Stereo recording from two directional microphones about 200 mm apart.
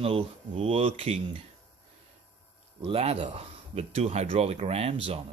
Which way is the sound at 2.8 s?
30° right (ahead or behind).